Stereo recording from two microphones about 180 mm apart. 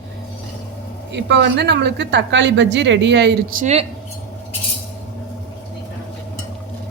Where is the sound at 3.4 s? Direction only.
50° right (ahead or behind).